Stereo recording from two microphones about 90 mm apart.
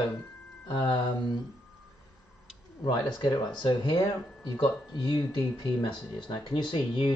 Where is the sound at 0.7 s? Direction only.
55° left (ahead or behind).